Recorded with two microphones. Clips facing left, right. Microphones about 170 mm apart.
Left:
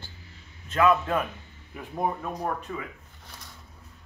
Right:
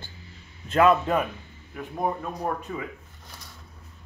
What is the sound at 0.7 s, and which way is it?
Speech, 35° right (ahead or behind).